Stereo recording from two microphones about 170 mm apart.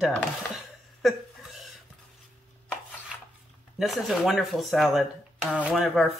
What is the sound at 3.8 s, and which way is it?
Speech, centre (ahead or behind).